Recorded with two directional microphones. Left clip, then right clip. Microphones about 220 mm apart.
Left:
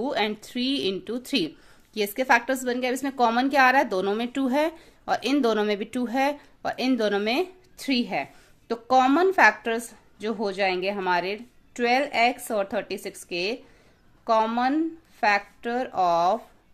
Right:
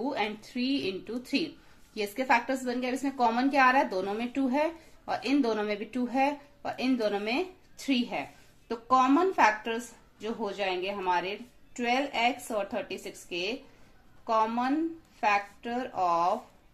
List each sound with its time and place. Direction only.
0.0 s a woman's voice: 45° left (ahead or behind)